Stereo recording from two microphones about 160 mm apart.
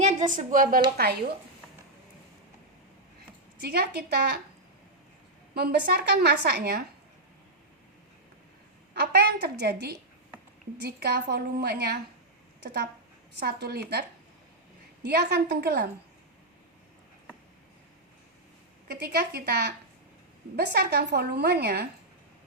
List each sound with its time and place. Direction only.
0.0 s a woman's voice: 50° right (ahead or behind)
0.9 s a woman's voice: 75° right (ahead or behind)
3.6 s a woman's voice: 90° right
5.5 s a woman's voice: 80° right
8.9 s a woman's voice: 80° right
13.4 s a woman's voice: 85° right
15.0 s a woman's voice: 90° right
18.9 s a woman's voice: 75° right (ahead or behind)